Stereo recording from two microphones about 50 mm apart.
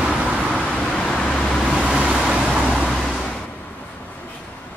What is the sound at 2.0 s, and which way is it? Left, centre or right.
Vehicle, centre.